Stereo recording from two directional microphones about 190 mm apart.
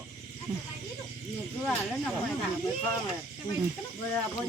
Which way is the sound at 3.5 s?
20° left (ahead or behind).